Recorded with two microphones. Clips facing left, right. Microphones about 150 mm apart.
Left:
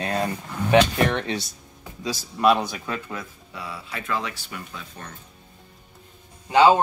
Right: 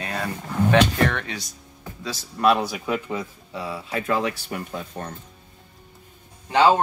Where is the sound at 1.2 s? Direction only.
30° left (ahead or behind).